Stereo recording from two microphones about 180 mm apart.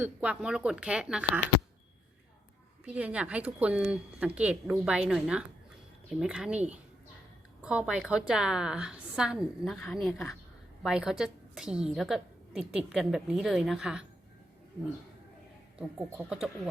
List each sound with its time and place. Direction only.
0.0 s a woman's voice: 5° right (ahead or behind)
2.8 s a woman's voice: 5° right (ahead or behind)
7.6 s a woman's voice: 5° right (ahead or behind)
16.1 s a woman's voice: 5° right (ahead or behind)